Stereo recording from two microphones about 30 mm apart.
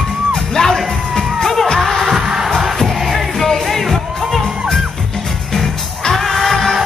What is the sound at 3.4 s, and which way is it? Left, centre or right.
Music, centre.